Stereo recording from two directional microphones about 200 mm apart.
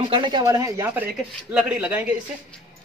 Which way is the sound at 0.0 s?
25° right (ahead or behind).